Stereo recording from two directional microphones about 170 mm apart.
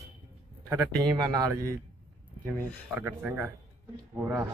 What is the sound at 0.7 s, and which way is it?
Speech, 20° right (ahead or behind).